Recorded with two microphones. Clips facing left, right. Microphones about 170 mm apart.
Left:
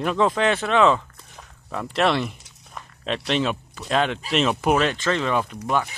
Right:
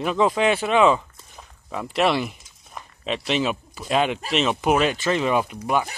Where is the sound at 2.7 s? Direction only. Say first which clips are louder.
Even; 5° right (ahead or behind).